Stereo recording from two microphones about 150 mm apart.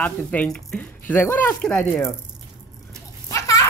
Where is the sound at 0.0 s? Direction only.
10° left (ahead or behind).